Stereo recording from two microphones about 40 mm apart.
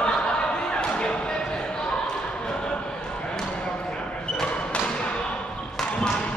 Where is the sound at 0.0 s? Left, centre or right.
Left.